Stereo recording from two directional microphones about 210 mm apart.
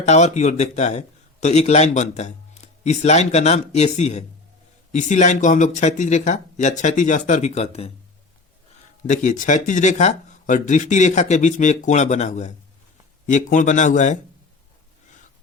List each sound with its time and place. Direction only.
0.0 s a man's voice: 30° left (ahead or behind)
9.0 s a man's voice: 35° left (ahead or behind)